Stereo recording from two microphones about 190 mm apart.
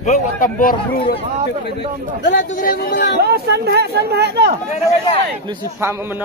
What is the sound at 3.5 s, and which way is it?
Speech, 60° right (ahead or behind).